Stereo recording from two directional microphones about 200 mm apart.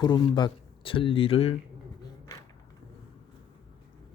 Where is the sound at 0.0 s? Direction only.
20° left (ahead or behind).